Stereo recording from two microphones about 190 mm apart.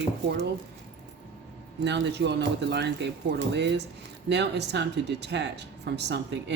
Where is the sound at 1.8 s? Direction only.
65° right (ahead or behind).